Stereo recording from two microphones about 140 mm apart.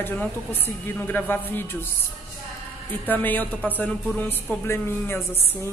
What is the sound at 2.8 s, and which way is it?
A woman's voice, 15° left (ahead or behind).